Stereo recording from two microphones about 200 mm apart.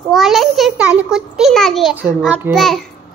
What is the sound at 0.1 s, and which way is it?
A child's voice, centre (ahead or behind).